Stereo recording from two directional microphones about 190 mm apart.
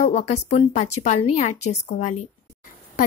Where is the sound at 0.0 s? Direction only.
35° left (ahead or behind).